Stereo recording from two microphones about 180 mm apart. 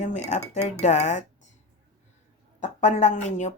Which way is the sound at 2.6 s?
40° left (ahead or behind).